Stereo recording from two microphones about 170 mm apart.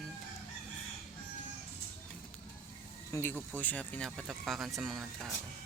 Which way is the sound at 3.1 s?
15° left (ahead or behind).